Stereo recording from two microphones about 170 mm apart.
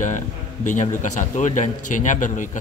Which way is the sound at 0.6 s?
45° left (ahead or behind).